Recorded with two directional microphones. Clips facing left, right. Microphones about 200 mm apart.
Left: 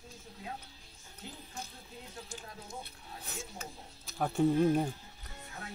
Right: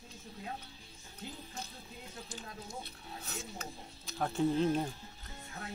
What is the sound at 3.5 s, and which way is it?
Speech, 10° left (ahead or behind).